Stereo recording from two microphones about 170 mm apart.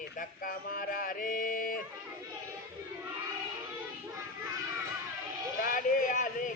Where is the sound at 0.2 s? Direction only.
55° left (ahead or behind).